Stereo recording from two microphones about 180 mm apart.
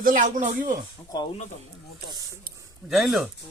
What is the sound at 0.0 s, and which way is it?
Speech, 45° right (ahead or behind).